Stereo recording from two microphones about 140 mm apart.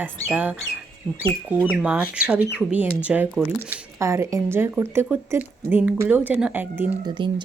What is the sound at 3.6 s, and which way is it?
Speech, 20° right (ahead or behind).